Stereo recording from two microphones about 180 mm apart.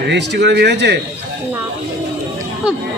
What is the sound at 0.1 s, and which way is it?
Speech, 70° right (ahead or behind).